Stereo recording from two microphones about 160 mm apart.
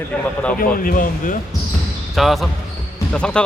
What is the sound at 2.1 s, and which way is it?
Speech, centre (ahead or behind).